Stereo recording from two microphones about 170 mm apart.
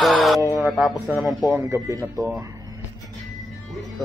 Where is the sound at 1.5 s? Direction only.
15° right (ahead or behind).